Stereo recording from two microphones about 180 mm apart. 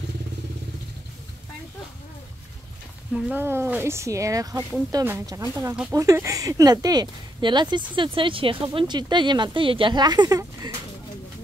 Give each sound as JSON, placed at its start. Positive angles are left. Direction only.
{"t": 3.1, "sound": "speech", "side_deg": -5}